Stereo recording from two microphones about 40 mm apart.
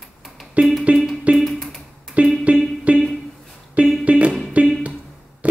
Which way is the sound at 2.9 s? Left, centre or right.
Right.